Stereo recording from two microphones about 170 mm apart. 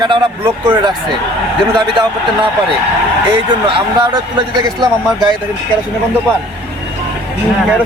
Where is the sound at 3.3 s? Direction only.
30° right (ahead or behind).